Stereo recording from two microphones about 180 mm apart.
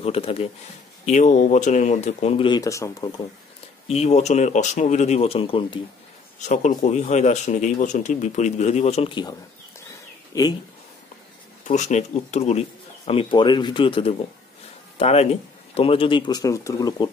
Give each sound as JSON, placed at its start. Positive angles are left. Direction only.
{"t": 0.0, "sound": "speech", "side_deg": 35}
{"t": 3.8, "sound": "speech", "side_deg": 35}
{"t": 6.4, "sound": "speech", "side_deg": 40}
{"t": 10.3, "sound": "speech", "side_deg": 20}
{"t": 11.6, "sound": "speech", "side_deg": 40}